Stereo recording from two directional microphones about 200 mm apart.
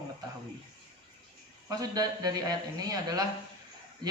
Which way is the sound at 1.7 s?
20° right (ahead or behind).